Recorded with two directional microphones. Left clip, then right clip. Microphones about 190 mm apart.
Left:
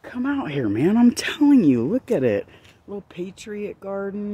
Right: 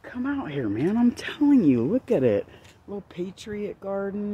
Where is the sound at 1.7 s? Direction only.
15° left (ahead or behind).